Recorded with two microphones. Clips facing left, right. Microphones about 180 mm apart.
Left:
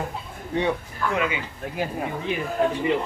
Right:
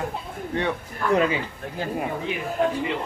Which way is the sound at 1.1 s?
35° right (ahead or behind).